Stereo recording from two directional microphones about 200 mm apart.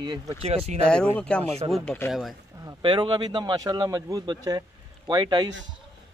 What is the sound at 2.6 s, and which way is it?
Speech, 25° right (ahead or behind).